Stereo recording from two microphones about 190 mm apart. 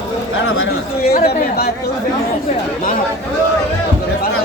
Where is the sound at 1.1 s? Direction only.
55° left (ahead or behind).